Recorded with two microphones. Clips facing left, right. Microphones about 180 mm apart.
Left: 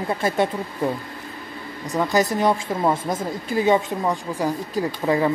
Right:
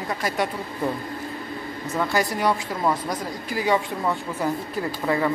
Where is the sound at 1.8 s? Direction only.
20° left (ahead or behind).